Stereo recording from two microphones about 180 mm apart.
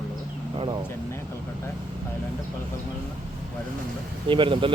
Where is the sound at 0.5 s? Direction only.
30° right (ahead or behind).